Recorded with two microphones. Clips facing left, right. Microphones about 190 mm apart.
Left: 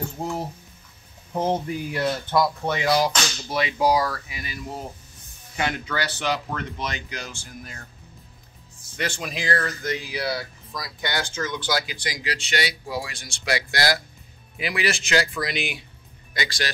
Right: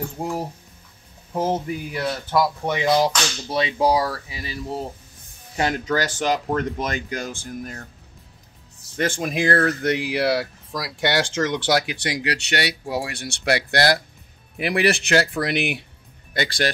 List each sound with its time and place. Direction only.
0.2 s speech: 15° right (ahead or behind)
2.6 s speech: 20° right (ahead or behind); by 7.8 s 45° right (ahead or behind)
8.9 s speech: 50° right (ahead or behind)